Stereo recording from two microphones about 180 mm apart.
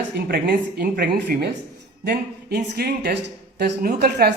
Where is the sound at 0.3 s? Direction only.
60° right (ahead or behind).